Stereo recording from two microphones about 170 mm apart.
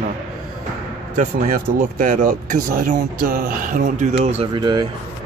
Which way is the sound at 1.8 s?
50° right (ahead or behind).